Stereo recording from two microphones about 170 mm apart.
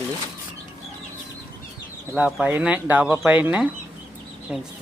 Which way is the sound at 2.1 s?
10° right (ahead or behind).